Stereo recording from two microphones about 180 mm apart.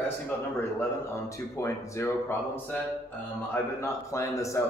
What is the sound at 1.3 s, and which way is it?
A man's voice, 15° left (ahead or behind).